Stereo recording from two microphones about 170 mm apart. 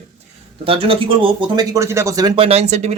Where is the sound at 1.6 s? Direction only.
20° right (ahead or behind).